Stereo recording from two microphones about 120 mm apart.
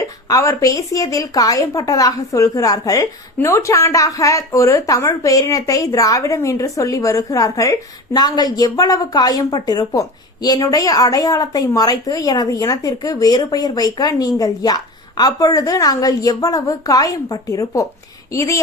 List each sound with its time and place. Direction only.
0.3 s speech: 30° left (ahead or behind)